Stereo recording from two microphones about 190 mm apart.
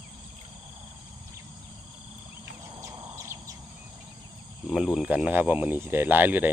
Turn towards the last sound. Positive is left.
turn(degrees=-10)  # may be behind; listen again after turning